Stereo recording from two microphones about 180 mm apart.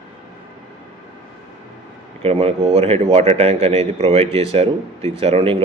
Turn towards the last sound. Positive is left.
turn(degrees=-35)  # may be behind; listen again after turning